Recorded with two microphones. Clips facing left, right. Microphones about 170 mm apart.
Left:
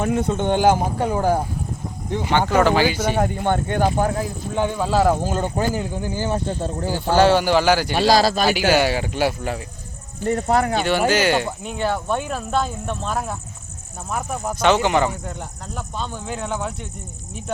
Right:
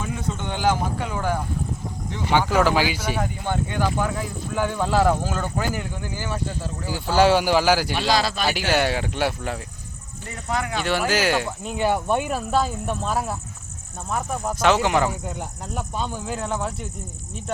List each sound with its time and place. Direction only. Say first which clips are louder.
0.0 s speech: left 8 dB; 65° left (ahead or behind); by 1.5 s 40° left (ahead or behind)
2.5 s speech: left 4 dB; 5° right (ahead or behind)
3.0 s speech: left 6 dB; 45° left (ahead or behind)
3.9 s speech: left 4 dB; 45° left (ahead or behind)
4.5 s speech: left 2 dB; 20° left (ahead or behind)
7.2 s speech: left 1 dB; 10° right (ahead or behind)
7.9 s speech: left 6 dB; 40° left (ahead or behind)
8.5 s speech: left 4 dB; 5° left (ahead or behind)
10.2 s speech: left 9 dB; 40° left (ahead or behind)
11.1 s speech: left 3 dB; centre (ahead or behind)
11.8 s speech: right 1 dB; 10° right (ahead or behind)